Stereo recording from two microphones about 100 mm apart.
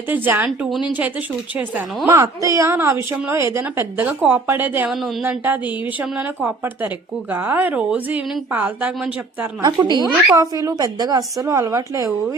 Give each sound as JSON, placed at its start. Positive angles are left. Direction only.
{"t": 0.1, "sound": "a woman's voice", "side_deg": -20}
{"t": 0.4, "sound": "a woman's voice", "side_deg": -5}
{"t": 2.0, "sound": "a woman's voice", "side_deg": -30}
{"t": 9.6, "sound": "a woman's voice", "side_deg": -45}